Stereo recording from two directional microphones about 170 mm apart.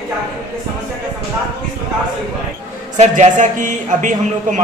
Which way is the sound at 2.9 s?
45° right (ahead or behind).